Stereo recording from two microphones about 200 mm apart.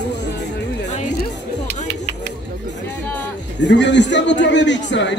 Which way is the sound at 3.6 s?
60° left (ahead or behind).